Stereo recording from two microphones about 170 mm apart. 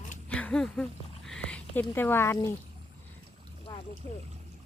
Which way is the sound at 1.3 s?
5° left (ahead or behind).